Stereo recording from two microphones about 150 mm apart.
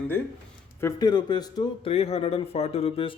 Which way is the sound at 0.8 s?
20° left (ahead or behind).